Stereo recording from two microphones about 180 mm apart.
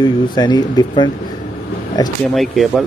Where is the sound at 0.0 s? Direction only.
25° left (ahead or behind).